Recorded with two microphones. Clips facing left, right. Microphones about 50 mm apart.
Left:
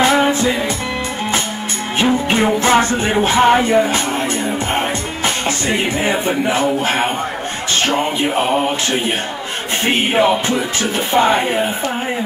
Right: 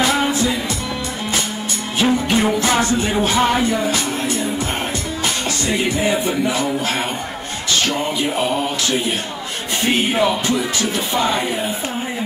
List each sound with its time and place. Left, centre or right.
0.0 s music: left
2.0 s music: left